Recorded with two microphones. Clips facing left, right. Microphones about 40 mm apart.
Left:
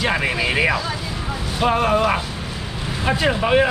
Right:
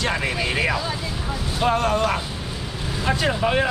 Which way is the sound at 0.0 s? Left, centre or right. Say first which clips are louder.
Left 3 dB; centre.